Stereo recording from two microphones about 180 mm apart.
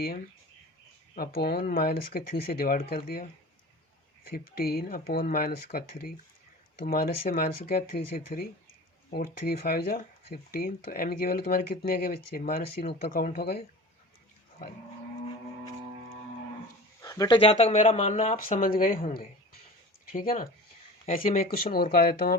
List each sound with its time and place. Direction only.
1.4 s speech: 60° left (ahead or behind)
4.3 s speech: 55° left (ahead or behind)
17.0 s speech: 20° left (ahead or behind)
17.6 s speech: 40° left (ahead or behind)
21.2 s speech: 55° left (ahead or behind)